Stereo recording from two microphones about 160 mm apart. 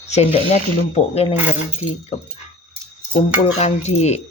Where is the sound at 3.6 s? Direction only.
45° left (ahead or behind).